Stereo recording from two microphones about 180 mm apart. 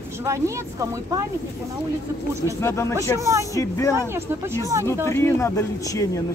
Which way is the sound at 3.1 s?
15° right (ahead or behind).